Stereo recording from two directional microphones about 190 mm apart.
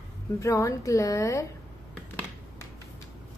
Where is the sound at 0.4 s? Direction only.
15° left (ahead or behind).